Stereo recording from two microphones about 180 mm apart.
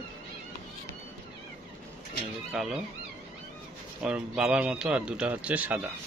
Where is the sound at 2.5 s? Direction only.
Centre (ahead or behind).